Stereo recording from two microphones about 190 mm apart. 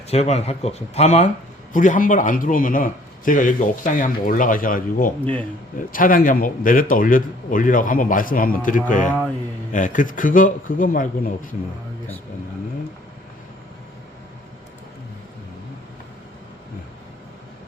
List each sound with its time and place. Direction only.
0.1 s a man's voice: 35° left (ahead or behind)